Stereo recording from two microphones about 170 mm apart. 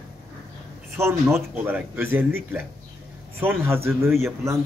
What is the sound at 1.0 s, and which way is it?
Speech, 15° right (ahead or behind).